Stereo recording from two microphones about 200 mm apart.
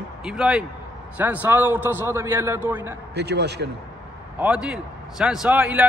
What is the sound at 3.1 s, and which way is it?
Speech, 55° right (ahead or behind).